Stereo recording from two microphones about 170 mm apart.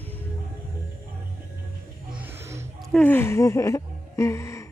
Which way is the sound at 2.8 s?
10° left (ahead or behind).